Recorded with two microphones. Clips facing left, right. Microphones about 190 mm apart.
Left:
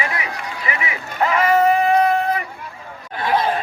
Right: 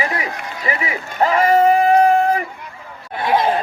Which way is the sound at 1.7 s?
45° right (ahead or behind).